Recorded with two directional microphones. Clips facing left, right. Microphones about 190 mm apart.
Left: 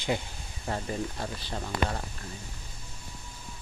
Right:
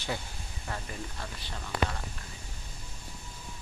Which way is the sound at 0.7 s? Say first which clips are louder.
Left 7 dB; 35° left (ahead or behind).